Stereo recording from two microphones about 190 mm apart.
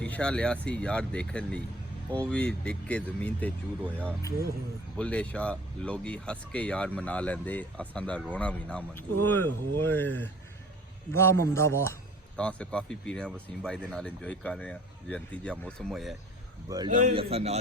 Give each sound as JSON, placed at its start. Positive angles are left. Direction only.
{"t": 0.0, "sound": "speech", "side_deg": 5}
{"t": 4.9, "sound": "speech", "side_deg": 5}
{"t": 16.6, "sound": "a man's voice", "side_deg": -20}
{"t": 17.0, "sound": "a man's voice", "side_deg": -35}